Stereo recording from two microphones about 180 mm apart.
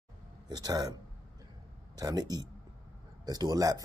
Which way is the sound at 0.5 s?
25° right (ahead or behind).